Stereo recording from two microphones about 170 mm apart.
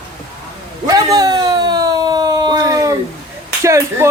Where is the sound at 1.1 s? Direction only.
25° right (ahead or behind).